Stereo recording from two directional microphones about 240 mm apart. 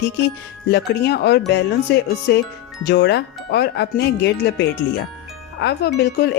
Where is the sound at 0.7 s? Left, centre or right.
Left.